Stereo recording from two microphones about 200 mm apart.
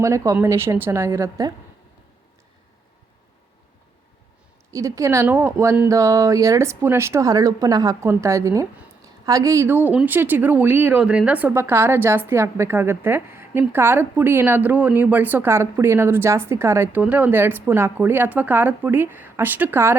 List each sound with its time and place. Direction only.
0.0 s speech: 15° right (ahead or behind)
4.7 s speech: 15° right (ahead or behind)